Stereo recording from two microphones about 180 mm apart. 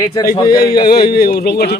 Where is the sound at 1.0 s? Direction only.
60° left (ahead or behind).